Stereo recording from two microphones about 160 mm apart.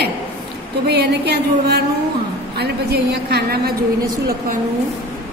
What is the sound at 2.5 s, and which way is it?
A woman's voice, 90° right.